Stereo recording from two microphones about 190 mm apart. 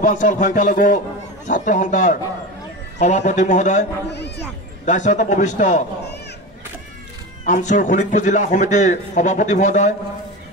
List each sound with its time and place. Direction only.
0.0 s a man's voice: 40° left (ahead or behind)
4.8 s a man's voice: 40° left (ahead or behind)
7.4 s a man's voice: 40° left (ahead or behind)